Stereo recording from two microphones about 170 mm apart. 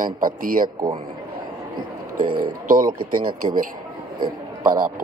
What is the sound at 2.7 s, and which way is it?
Speech, 55° right (ahead or behind).